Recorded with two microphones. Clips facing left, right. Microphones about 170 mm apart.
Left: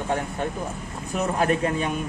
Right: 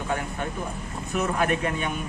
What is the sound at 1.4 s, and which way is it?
Speech, 35° left (ahead or behind).